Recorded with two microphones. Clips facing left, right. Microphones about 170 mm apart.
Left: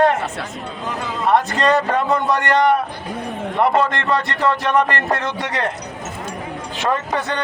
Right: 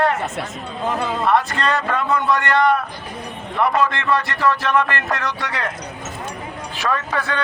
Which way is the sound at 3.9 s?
50° left (ahead or behind).